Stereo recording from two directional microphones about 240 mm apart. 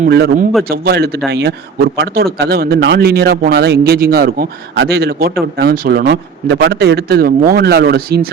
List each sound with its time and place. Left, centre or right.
0.0 s a man's voice: right